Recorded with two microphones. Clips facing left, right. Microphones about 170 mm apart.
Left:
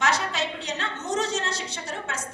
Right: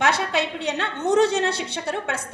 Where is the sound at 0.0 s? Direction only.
60° right (ahead or behind).